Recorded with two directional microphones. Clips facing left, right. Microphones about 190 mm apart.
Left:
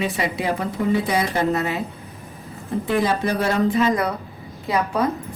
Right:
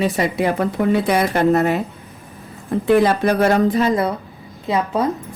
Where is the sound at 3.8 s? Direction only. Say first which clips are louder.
Right 2 dB; 30° right (ahead or behind).